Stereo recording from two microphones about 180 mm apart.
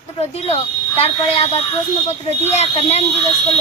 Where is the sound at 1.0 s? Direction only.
35° left (ahead or behind).